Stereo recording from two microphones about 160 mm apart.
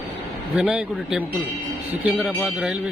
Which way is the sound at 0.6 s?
5° right (ahead or behind).